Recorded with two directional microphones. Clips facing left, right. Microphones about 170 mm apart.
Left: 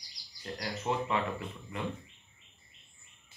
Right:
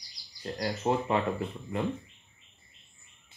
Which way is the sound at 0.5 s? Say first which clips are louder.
Right 5 dB; 30° right (ahead or behind).